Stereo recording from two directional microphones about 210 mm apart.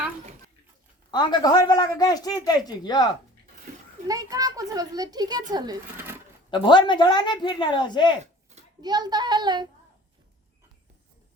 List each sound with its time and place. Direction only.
1.1 s speech: 20° left (ahead or behind)
4.0 s a child's voice: 15° right (ahead or behind)
6.5 s speech: 20° left (ahead or behind)
8.2 s a sound: 30° right (ahead or behind)
8.8 s speech: 20° right (ahead or behind)